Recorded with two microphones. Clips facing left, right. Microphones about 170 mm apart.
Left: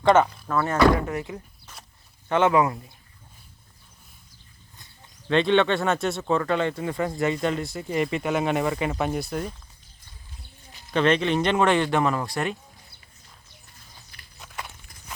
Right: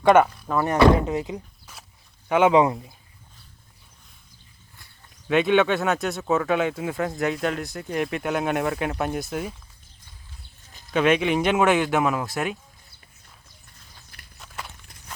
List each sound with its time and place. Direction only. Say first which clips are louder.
0.4 s speech: right 2 dB; 15° right (ahead or behind)
5.3 s speech: right 1 dB; 5° right (ahead or behind)
10.9 s speech: right 1 dB; 10° right (ahead or behind)
14.3 s clip-clop: even; centre (ahead or behind)